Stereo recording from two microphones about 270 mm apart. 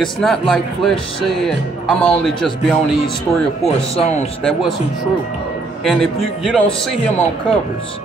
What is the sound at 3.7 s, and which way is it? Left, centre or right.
Speech, left.